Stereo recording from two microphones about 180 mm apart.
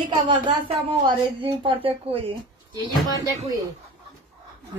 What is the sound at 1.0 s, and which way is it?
A woman's voice, 30° right (ahead or behind).